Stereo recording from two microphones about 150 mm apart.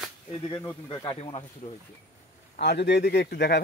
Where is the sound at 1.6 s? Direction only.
55° left (ahead or behind).